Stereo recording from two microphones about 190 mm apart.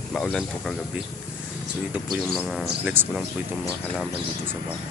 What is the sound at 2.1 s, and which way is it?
Speech, centre (ahead or behind).